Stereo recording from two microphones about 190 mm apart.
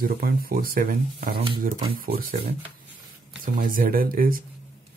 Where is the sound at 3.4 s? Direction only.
45° right (ahead or behind).